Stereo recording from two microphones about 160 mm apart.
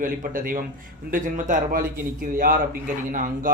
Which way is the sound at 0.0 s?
60° right (ahead or behind).